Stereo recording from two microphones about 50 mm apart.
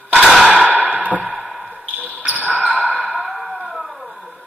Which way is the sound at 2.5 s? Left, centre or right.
Left.